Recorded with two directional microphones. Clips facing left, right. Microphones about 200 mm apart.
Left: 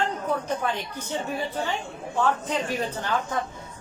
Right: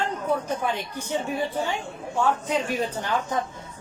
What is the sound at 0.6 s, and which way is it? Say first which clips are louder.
A woman's voice: right 1 dB; 10° right (ahead or behind).